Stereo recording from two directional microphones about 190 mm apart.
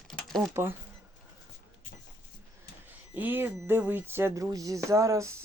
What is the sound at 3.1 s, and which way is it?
Speech, 10° right (ahead or behind).